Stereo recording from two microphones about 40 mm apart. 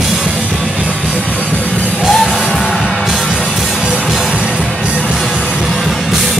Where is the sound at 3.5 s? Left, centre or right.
Centre.